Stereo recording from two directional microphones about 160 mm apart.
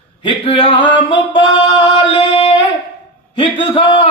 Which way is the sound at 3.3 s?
30° left (ahead or behind).